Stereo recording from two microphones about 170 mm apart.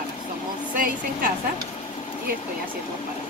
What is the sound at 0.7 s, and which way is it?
Speech, 55° right (ahead or behind).